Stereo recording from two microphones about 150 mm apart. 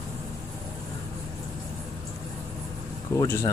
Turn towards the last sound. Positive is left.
turn(degrees=20)  # may be behind; listen again after turning